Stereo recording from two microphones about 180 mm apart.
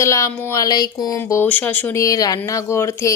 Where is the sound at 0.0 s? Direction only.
15° left (ahead or behind).